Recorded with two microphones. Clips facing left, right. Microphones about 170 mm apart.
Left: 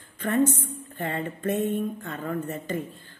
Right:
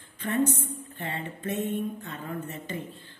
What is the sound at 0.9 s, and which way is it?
A woman's voice, 50° left (ahead or behind).